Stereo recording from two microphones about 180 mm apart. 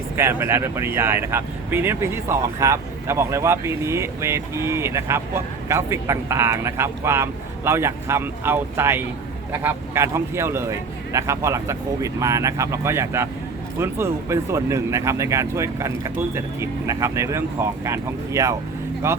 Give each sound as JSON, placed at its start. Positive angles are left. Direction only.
{"t": 0.2, "sound": "speech", "side_deg": -15}